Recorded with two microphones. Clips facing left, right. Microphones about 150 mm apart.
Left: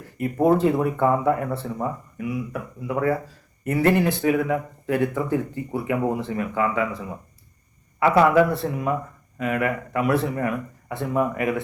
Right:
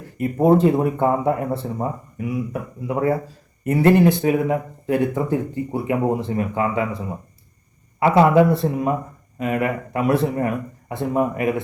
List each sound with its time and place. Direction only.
0.4 s speech: 25° right (ahead or behind)